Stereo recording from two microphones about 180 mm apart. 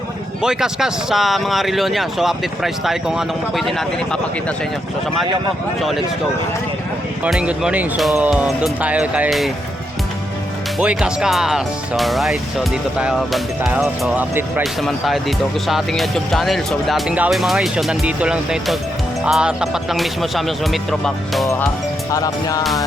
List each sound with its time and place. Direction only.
0.4 s speech: 5° right (ahead or behind)
7.3 s speech: 5° right (ahead or behind)
10.8 s speech: 5° right (ahead or behind)
22.1 s music: 20° left (ahead or behind)